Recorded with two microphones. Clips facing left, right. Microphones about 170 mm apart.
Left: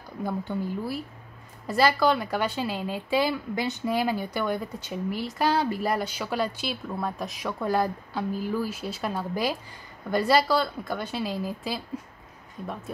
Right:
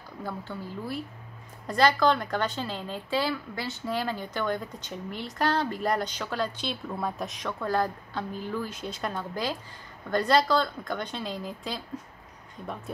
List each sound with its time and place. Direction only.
0.2 s speech: 15° left (ahead or behind)
1.7 s a woman's voice: 5° left (ahead or behind)